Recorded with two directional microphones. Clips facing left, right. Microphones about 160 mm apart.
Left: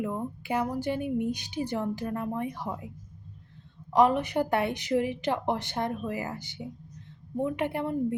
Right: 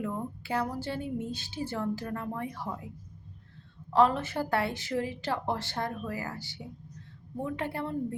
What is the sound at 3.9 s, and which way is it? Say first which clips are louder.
A woman's voice: left 2 dB; 15° left (ahead or behind).